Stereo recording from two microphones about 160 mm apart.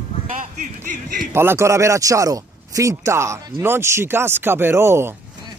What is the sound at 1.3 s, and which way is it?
Speech, 15° right (ahead or behind).